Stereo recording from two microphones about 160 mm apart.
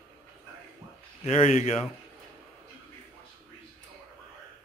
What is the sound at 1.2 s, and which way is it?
Speech, 45° left (ahead or behind).